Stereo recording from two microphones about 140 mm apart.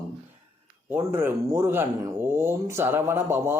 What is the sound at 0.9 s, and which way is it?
Speech, 15° right (ahead or behind).